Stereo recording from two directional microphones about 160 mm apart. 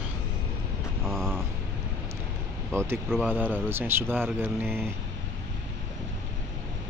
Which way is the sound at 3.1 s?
10° right (ahead or behind).